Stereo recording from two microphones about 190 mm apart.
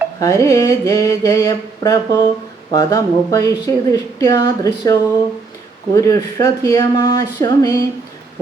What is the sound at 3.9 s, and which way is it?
Speech, 20° left (ahead or behind).